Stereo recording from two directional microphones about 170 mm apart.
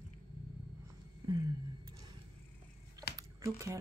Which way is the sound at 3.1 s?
20° right (ahead or behind).